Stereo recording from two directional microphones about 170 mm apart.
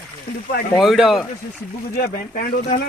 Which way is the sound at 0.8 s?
Centre (ahead or behind).